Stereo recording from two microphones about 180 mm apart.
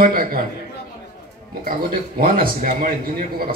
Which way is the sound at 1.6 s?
55° right (ahead or behind).